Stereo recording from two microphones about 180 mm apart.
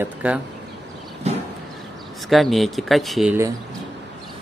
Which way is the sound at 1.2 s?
35° right (ahead or behind).